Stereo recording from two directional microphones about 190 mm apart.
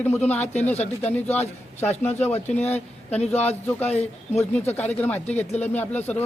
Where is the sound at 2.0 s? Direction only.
10° left (ahead or behind).